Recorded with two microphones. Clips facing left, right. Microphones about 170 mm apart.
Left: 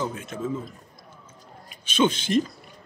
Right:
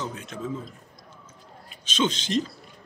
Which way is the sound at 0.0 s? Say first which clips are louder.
Left 4 dB; 5° left (ahead or behind).